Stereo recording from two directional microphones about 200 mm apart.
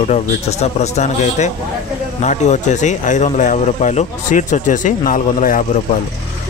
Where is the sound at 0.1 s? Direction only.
35° left (ahead or behind).